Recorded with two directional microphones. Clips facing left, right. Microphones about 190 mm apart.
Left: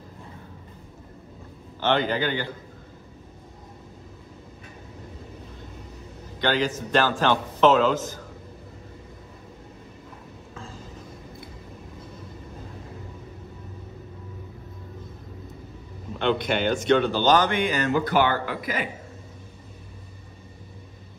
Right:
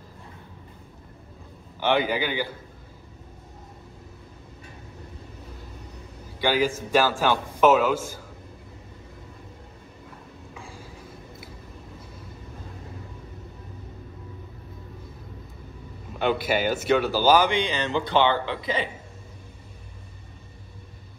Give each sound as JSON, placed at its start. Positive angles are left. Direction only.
{"t": 1.8, "sound": "a man's voice", "side_deg": -10}
{"t": 6.4, "sound": "a man's voice", "side_deg": -10}
{"t": 10.5, "sound": "a sound", "side_deg": -10}
{"t": 16.2, "sound": "a man's voice", "side_deg": -5}
{"t": 17.9, "sound": "speech", "side_deg": -25}